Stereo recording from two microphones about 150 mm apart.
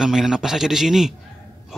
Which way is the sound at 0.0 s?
5° right (ahead or behind).